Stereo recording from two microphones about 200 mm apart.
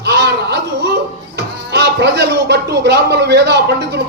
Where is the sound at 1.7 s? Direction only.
55° right (ahead or behind).